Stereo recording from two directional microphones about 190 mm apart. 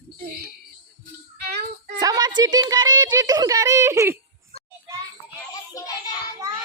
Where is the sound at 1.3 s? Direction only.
60° right (ahead or behind).